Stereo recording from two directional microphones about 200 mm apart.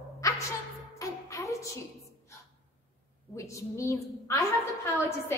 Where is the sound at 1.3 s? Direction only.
15° left (ahead or behind).